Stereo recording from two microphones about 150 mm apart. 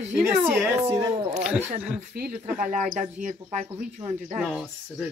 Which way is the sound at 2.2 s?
65° right (ahead or behind).